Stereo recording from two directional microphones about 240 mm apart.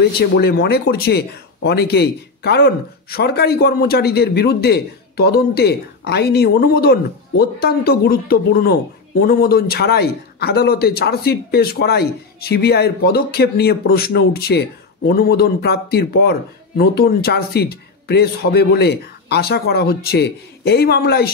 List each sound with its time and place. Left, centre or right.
0.0 s speech: left